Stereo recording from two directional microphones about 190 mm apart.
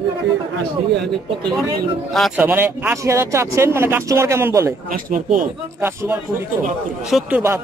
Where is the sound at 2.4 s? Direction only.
10° right (ahead or behind).